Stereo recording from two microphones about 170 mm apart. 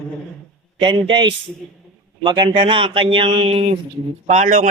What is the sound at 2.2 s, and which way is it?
A man's voice, 30° right (ahead or behind).